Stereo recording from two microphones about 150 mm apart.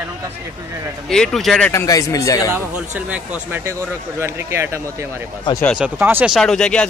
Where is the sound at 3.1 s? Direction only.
10° right (ahead or behind).